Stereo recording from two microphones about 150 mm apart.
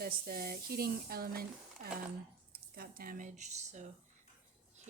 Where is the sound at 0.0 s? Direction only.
80° right; by 3.8 s 50° right (ahead or behind).